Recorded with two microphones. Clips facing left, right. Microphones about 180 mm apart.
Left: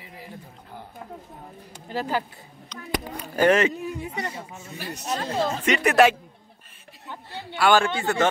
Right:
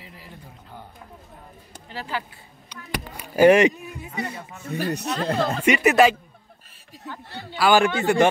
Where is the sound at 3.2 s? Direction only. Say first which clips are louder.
Right 5 dB; 10° right (ahead or behind).